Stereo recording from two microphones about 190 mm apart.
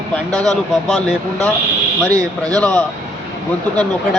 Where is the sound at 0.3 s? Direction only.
5° left (ahead or behind).